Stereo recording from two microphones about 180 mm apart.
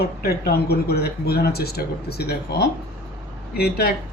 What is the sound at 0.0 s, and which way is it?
Speech, 60° left (ahead or behind).